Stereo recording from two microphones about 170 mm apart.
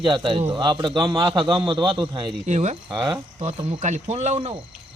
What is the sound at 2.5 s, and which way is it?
Speech, 40° right (ahead or behind).